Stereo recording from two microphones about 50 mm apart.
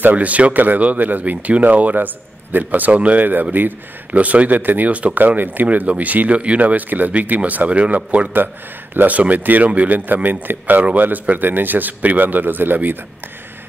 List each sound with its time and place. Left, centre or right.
0.0 s speech: right